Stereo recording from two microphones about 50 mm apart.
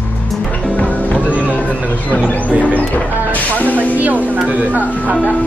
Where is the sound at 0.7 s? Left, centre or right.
Left.